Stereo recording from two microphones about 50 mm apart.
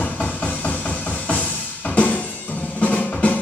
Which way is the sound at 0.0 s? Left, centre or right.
Left.